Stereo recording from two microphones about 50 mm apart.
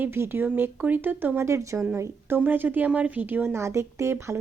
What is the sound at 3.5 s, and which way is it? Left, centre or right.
Speech, right.